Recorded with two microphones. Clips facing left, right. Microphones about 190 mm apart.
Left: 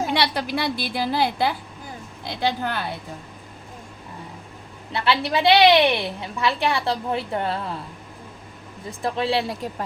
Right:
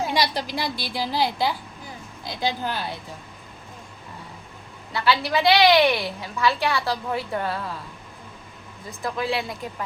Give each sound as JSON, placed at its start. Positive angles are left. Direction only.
{"t": 0.1, "sound": "a woman's voice", "side_deg": 60}
{"t": 4.9, "sound": "a woman's voice", "side_deg": 25}
{"t": 8.9, "sound": "a woman's voice", "side_deg": 30}